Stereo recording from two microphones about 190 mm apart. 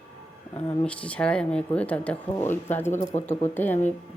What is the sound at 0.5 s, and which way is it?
Speech, 5° left (ahead or behind).